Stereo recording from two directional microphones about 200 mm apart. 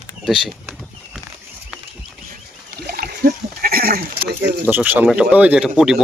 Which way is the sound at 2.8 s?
50° right (ahead or behind).